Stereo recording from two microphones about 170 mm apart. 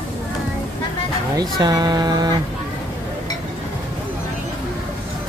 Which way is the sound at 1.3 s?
25° right (ahead or behind).